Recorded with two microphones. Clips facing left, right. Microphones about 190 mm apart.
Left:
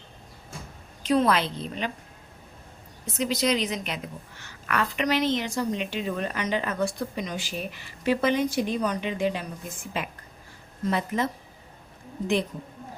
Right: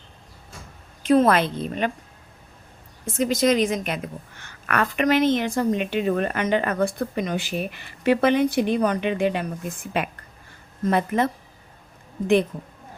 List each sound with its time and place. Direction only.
1.0 s a woman's voice: 50° right (ahead or behind)
3.1 s a woman's voice: 50° right (ahead or behind)